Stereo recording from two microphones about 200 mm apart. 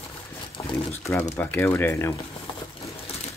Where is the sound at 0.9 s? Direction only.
10° left (ahead or behind).